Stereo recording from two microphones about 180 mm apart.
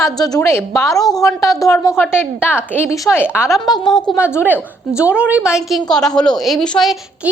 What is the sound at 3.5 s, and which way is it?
Speech, centre (ahead or behind).